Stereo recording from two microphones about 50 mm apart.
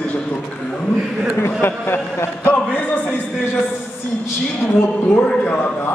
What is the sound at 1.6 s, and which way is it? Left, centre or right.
Speech, left.